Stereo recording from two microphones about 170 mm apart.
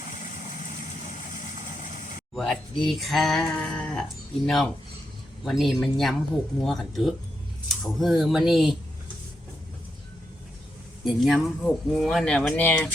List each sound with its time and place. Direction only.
2.3 s speech: centre (ahead or behind)
11.0 s speech: centre (ahead or behind)